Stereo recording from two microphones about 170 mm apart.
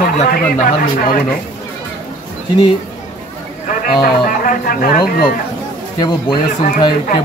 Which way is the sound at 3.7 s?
55° left (ahead or behind).